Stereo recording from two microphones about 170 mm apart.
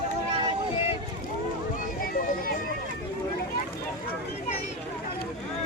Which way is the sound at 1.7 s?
55° left (ahead or behind).